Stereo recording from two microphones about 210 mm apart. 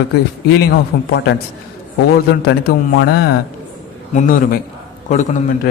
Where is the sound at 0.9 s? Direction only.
50° left (ahead or behind).